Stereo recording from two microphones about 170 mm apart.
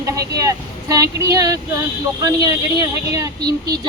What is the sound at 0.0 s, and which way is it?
Speech, 20° right (ahead or behind).